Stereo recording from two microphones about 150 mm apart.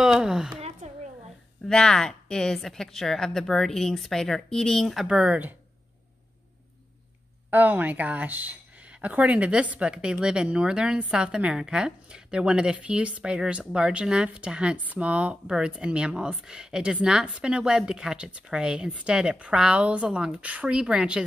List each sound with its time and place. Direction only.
0.0 s a woman's voice: 5° right (ahead or behind)
0.8 s a sound: 50° right (ahead or behind)
1.7 s a woman's voice: 5° left (ahead or behind)
7.5 s speech: 10° right (ahead or behind)